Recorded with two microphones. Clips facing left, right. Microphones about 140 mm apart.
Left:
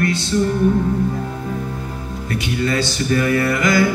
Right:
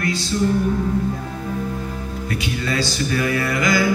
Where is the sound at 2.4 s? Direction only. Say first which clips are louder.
Left 4 dB; 55° left (ahead or behind).